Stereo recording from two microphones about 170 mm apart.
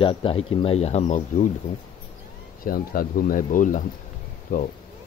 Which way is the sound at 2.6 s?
60° left (ahead or behind).